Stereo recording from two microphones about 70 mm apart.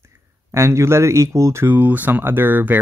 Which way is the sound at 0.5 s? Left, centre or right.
Right.